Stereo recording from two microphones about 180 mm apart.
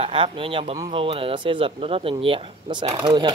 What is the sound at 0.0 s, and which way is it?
Speech, 30° right (ahead or behind).